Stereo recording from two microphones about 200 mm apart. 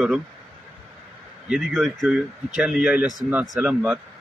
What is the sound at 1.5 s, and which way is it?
Speech, centre (ahead or behind).